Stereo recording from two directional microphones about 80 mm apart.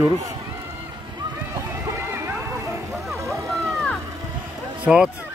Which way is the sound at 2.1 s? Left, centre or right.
Right.